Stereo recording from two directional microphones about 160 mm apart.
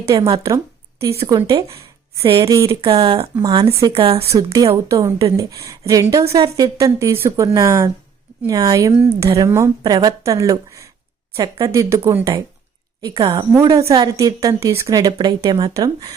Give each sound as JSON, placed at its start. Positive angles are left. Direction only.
{"t": 0.0, "sound": "a woman's voice", "side_deg": -20}
{"t": 2.8, "sound": "speech", "side_deg": -35}
{"t": 3.3, "sound": "a woman's voice", "side_deg": -20}
{"t": 3.9, "sound": "speech", "side_deg": -35}
{"t": 4.3, "sound": "a woman's voice", "side_deg": -20}